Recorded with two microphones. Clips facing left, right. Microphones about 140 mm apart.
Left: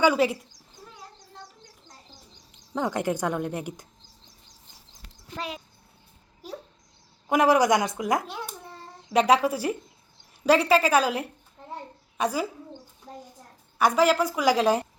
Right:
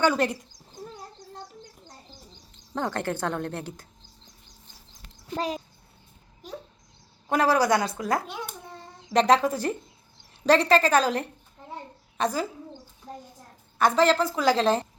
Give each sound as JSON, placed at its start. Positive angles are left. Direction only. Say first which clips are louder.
{"t": 0.0, "sound": "a woman's voice", "louder": "left 2 dB", "side_deg": 5}
{"t": 2.7, "sound": "a woman's voice", "louder": "left 2 dB", "side_deg": 10}
{"t": 5.3, "sound": "a child's voice", "louder": "right 6 dB", "side_deg": -35}
{"t": 7.3, "sound": "a woman's voice", "louder": "left 2 dB", "side_deg": 15}
{"t": 13.7, "sound": "a woman's voice", "louder": "even", "side_deg": 10}